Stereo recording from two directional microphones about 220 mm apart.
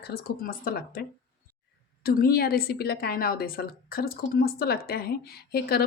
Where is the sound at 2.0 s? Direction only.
45° left (ahead or behind).